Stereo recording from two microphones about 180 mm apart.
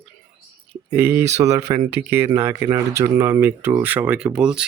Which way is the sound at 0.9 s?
10° right (ahead or behind).